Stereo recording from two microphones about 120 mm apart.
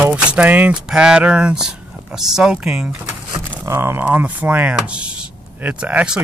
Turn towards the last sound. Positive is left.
turn(degrees=-10)  # may be behind; listen again after turning